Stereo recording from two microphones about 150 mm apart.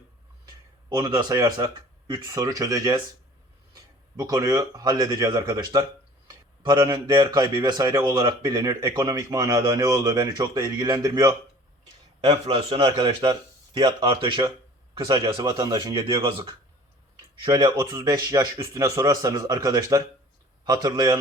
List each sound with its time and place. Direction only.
0.9 s speech: 30° right (ahead or behind)
4.2 s speech: 25° right (ahead or behind)
12.2 s a man's voice: 35° right (ahead or behind)